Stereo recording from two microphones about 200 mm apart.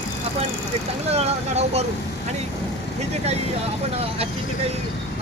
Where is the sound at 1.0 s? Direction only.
30° right (ahead or behind).